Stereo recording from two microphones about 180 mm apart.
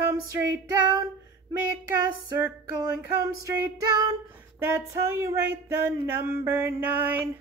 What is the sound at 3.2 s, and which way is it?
Female singing, 20° right (ahead or behind).